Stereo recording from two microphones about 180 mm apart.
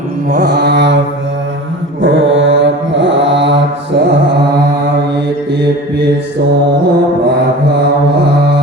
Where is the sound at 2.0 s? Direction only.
85° right.